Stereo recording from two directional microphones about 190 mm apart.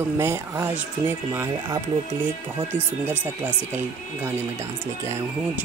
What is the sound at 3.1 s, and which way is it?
Speech, 10° right (ahead or behind).